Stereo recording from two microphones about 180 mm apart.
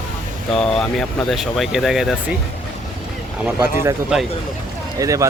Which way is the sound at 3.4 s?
10° right (ahead or behind).